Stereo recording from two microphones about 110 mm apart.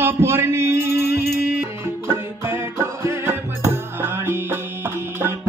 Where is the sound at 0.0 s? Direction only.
20° right (ahead or behind).